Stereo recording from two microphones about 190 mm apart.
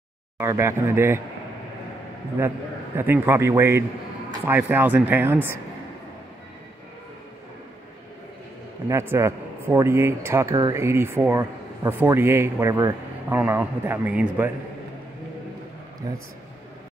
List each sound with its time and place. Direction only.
0.4 s speech: 15° right (ahead or behind)
3.0 s speech: 10° right (ahead or behind)
8.8 s speech: 15° right (ahead or behind)
16.0 s a man's voice: 20° right (ahead or behind)